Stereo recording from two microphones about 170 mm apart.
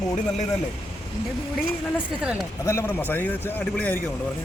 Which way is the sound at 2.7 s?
15° left (ahead or behind).